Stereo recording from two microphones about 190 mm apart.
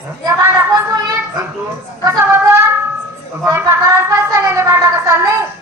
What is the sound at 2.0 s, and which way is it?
A woman's voice, 15° right (ahead or behind).